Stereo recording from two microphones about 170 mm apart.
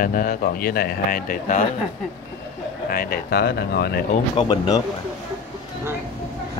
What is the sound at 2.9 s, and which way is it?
Speech, 65° left (ahead or behind).